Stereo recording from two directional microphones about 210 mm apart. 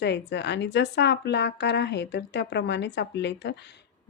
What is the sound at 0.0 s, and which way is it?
Speech, 55° left (ahead or behind).